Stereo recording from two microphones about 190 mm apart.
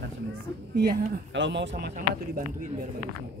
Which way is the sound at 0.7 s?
60° right (ahead or behind).